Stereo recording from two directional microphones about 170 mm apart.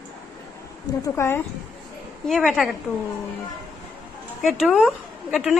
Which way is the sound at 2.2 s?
Centre (ahead or behind).